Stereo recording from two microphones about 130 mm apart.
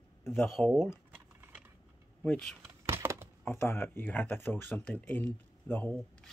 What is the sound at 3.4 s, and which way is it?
Speech, 20° left (ahead or behind).